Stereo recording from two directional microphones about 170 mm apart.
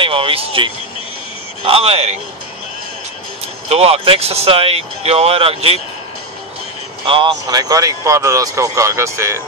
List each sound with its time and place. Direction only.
0.0 s speech: 30° right (ahead or behind)
3.6 s speech: 35° right (ahead or behind)
7.1 s speech: 30° right (ahead or behind)